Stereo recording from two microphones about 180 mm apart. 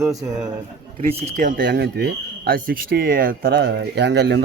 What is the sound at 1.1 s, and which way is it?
Speech, 40° right (ahead or behind).